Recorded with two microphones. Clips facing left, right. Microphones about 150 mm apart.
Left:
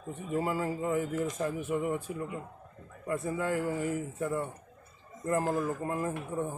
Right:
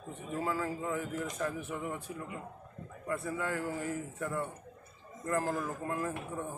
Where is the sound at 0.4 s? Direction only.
15° left (ahead or behind).